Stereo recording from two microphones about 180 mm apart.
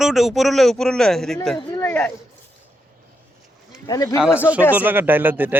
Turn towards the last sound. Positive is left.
turn(degrees=-10)  # may be behind; listen again after turning